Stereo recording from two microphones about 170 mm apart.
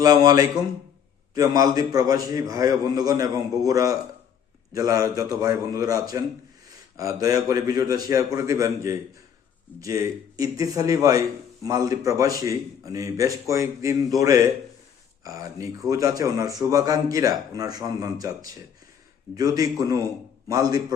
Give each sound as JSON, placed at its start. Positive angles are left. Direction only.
{"t": 0.0, "sound": "speech", "side_deg": -20}